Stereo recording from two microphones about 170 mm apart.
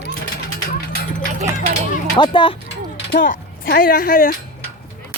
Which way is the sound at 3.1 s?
60° left (ahead or behind).